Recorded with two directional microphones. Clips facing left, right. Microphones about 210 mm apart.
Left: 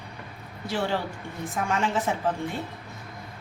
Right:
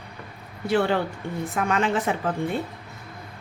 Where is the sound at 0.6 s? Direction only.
60° right (ahead or behind).